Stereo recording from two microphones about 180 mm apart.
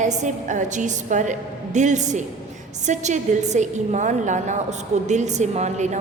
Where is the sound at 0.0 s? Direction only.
40° right (ahead or behind).